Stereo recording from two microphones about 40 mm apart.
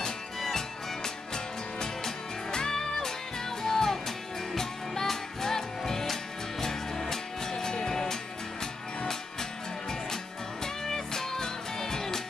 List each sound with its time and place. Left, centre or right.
0.0 s music: centre